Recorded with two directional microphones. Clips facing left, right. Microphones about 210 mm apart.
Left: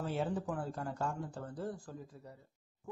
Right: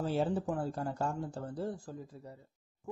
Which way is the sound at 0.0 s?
30° right (ahead or behind).